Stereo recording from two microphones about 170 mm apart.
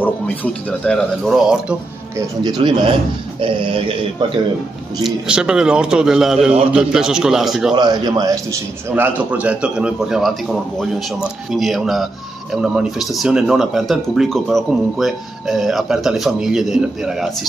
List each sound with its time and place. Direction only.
0.0 s speech: 10° left (ahead or behind)
2.1 s speech: 25° right (ahead or behind)
5.0 s speech: 5° right (ahead or behind)
7.7 s speech: 25° right (ahead or behind)
8.9 s speech: 10° right (ahead or behind)